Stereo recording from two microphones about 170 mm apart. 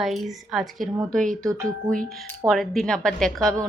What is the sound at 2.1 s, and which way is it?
Speech, centre (ahead or behind).